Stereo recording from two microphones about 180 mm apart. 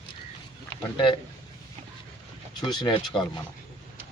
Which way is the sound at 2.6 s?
25° left (ahead or behind).